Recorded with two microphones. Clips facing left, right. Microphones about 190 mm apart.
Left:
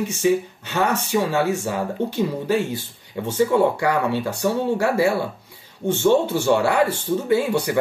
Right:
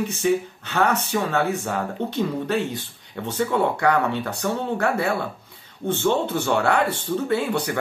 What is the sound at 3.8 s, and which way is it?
Speech, 10° left (ahead or behind).